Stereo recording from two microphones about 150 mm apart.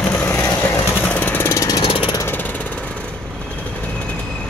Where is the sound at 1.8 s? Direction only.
35° left (ahead or behind).